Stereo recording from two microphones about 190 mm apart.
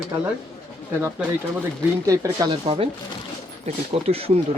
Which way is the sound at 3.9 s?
35° right (ahead or behind).